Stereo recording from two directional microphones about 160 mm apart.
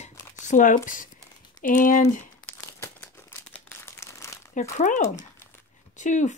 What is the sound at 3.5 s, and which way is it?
Crumpling, 15° left (ahead or behind).